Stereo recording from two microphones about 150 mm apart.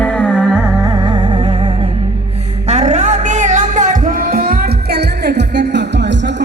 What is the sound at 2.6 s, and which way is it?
Music, 50° right (ahead or behind).